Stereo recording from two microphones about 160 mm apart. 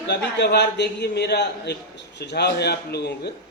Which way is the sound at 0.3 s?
90° left.